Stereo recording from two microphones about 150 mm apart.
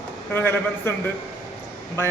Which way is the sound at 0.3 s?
15° left (ahead or behind).